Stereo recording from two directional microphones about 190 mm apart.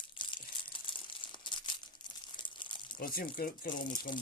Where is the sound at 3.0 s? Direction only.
50° left (ahead or behind).